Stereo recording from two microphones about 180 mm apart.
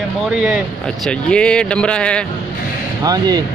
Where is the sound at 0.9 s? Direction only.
5° left (ahead or behind).